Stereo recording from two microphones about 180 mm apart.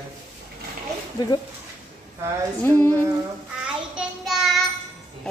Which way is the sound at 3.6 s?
5° right (ahead or behind).